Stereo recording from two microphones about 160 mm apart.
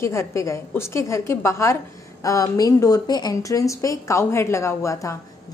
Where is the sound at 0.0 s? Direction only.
15° left (ahead or behind).